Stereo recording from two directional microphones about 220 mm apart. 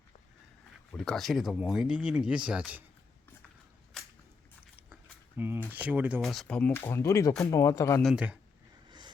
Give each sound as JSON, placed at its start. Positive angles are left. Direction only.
{"t": 0.9, "sound": "speech", "side_deg": 0}
{"t": 3.9, "sound": "whip", "side_deg": 0}
{"t": 5.4, "sound": "speech", "side_deg": -10}
{"t": 8.0, "sound": "speech", "side_deg": -5}
{"t": 8.9, "sound": "vehicle", "side_deg": -20}